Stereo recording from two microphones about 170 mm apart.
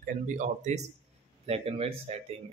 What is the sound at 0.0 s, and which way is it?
A man's voice, 45° right (ahead or behind).